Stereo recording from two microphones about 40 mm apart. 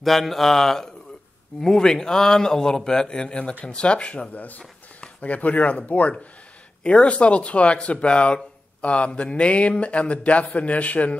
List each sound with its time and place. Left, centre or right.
0.0 s speech: centre; by 4.3 s left
4.3 s speech: left
6.8 s speech: left